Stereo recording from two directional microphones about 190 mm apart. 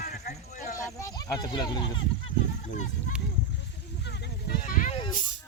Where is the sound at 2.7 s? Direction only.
40° left (ahead or behind).